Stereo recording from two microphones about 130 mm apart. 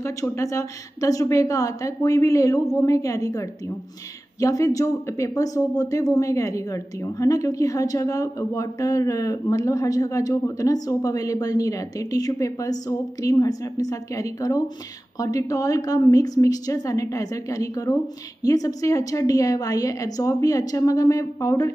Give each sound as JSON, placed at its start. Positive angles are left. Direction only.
{"t": 0.0, "sound": "speech", "side_deg": 25}